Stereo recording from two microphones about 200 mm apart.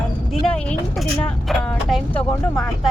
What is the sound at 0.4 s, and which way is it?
Vehicle, 5° left (ahead or behind).